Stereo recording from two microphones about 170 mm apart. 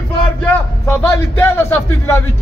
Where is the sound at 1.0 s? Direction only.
15° left (ahead or behind).